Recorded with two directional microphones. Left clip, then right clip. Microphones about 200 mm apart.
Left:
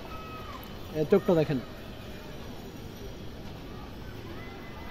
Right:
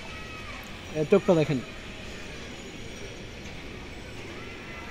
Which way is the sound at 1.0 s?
20° right (ahead or behind).